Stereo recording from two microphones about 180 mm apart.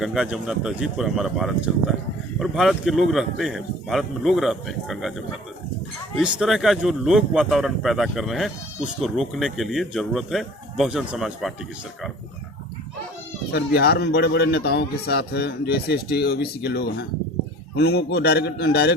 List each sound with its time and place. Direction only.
0.0 s speech: centre (ahead or behind)
13.5 s a man's voice: 65° left (ahead or behind)